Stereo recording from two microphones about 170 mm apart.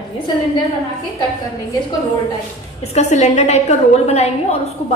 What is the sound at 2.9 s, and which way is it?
A woman's voice, 40° left (ahead or behind).